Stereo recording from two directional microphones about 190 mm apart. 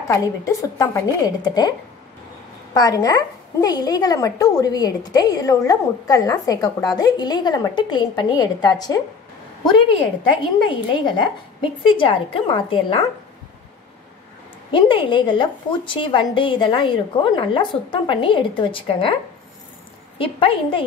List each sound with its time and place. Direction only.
0.1 s a woman's voice: 15° left (ahead or behind)
14.7 s a woman's voice: 25° left (ahead or behind)
20.2 s a woman's voice: 30° left (ahead or behind)